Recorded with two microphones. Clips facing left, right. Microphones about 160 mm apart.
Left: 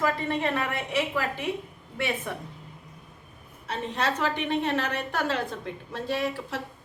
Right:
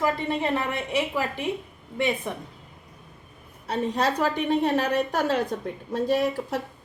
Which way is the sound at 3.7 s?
35° right (ahead or behind).